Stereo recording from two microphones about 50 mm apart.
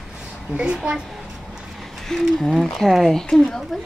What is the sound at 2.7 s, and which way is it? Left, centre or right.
Speech, centre.